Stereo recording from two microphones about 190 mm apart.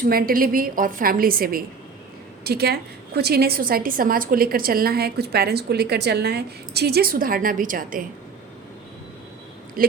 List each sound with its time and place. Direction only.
0.0 s a woman's voice: 50° right (ahead or behind)
9.8 s speech: 50° right (ahead or behind)